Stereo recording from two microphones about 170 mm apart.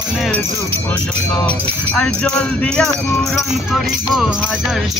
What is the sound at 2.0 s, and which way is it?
Speech, 5° left (ahead or behind).